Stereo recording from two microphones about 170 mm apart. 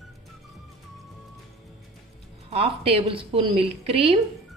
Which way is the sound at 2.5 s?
35° right (ahead or behind).